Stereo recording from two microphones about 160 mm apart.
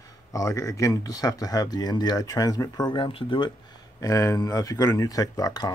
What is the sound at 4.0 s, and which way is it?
Speech, 20° left (ahead or behind).